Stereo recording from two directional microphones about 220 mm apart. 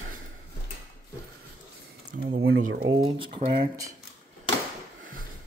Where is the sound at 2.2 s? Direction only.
65° right (ahead or behind).